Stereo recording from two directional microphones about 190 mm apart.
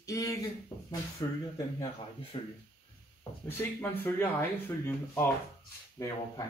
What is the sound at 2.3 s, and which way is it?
Speech, 25° left (ahead or behind).